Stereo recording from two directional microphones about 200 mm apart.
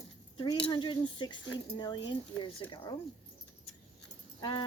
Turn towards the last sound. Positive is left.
turn(degrees=25)  # may be behind; listen again after turning